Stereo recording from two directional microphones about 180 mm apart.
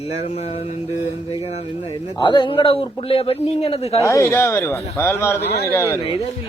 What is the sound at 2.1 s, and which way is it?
Speech, 25° left (ahead or behind).